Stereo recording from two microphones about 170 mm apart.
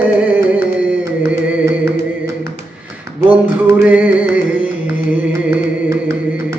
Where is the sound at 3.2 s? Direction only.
10° right (ahead or behind).